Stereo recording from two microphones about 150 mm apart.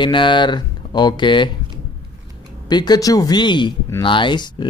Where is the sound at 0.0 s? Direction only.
30° left (ahead or behind).